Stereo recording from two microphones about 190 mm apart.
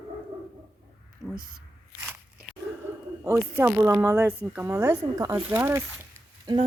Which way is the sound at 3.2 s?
10° right (ahead or behind).